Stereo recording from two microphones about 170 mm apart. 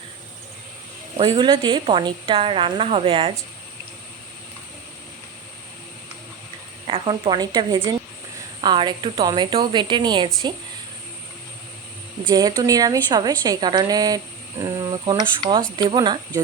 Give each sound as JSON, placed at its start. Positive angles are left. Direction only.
{"t": 1.1, "sound": "a woman's voice", "side_deg": -35}
{"t": 6.8, "sound": "a woman's voice", "side_deg": -30}
{"t": 12.3, "sound": "a woman's voice", "side_deg": -25}